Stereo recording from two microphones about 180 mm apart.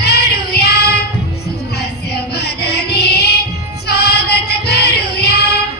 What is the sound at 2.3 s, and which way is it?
Music, 65° left (ahead or behind).